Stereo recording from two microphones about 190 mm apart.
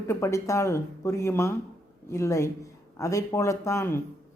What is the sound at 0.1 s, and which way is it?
Speech, 15° left (ahead or behind).